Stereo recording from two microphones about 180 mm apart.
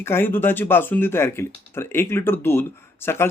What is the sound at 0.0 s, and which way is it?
A man's voice, 10° left (ahead or behind).